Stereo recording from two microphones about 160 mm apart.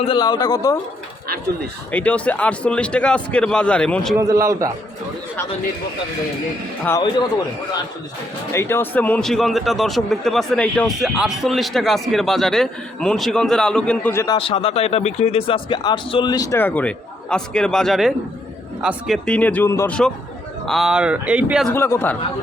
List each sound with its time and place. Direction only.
0.0 s speech: 30° left (ahead or behind)
1.9 s a man's voice: 10° left (ahead or behind)
4.2 s a man's voice: 20° right (ahead or behind)
8.5 s a man's voice: 15° left (ahead or behind)
14.3 s a man's voice: 35° left (ahead or behind); by 19.9 s 15° left (ahead or behind)
20.7 s a man's voice: centre (ahead or behind)
21.7 s a man's voice: 15° left (ahead or behind)